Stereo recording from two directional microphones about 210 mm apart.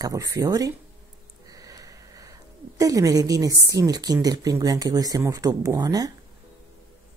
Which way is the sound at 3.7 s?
15° right (ahead or behind).